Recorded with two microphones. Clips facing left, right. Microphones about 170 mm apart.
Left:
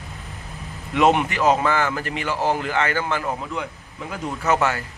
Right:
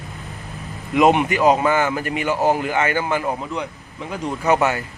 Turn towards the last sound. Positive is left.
turn(degrees=-15)  # may be behind; listen again after turning